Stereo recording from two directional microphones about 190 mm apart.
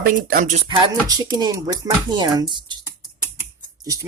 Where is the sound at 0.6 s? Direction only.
25° right (ahead or behind).